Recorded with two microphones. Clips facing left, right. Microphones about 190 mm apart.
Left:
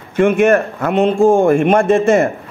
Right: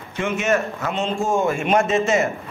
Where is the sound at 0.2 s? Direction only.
55° left (ahead or behind).